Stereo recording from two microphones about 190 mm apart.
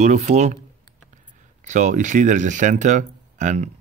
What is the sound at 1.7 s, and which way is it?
Speech, 40° right (ahead or behind).